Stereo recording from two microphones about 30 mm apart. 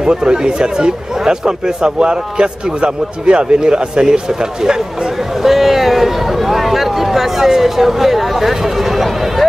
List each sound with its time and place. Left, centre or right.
0.0 s speech: right
5.4 s a sound: centre
6.5 s speech: centre